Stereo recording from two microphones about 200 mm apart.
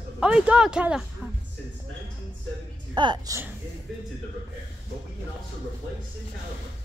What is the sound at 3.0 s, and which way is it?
Speech, 20° right (ahead or behind).